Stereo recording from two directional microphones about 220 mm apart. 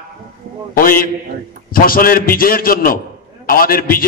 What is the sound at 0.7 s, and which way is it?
A man's voice, 40° left (ahead or behind).